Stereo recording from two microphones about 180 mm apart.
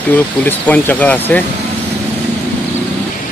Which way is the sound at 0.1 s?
10° left (ahead or behind).